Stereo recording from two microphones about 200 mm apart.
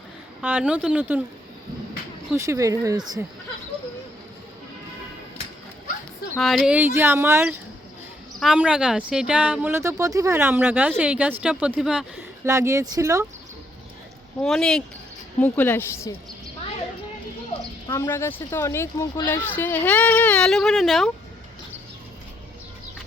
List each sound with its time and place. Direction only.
0.4 s speech: 5° right (ahead or behind)
2.3 s speech: 15° right (ahead or behind)
6.3 s speech: centre (ahead or behind)
12.5 s speech: 15° right (ahead or behind)
14.4 s speech: centre (ahead or behind)
17.8 s speech: 15° left (ahead or behind)